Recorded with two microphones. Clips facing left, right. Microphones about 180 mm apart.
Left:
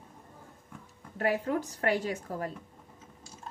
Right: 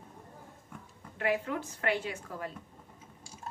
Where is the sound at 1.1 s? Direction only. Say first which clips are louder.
Left 3 dB; 40° left (ahead or behind).